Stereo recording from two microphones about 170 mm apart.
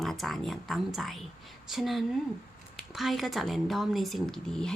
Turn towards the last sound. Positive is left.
turn(degrees=5)  # may be behind; listen again after turning